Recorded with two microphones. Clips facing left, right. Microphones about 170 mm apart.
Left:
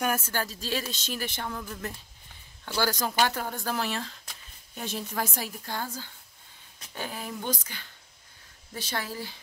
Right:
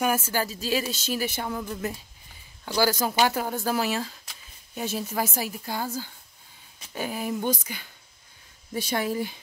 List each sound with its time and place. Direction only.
0.0 s speech: 5° right (ahead or behind)